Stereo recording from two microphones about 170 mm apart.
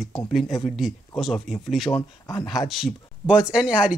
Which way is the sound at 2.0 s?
20° left (ahead or behind).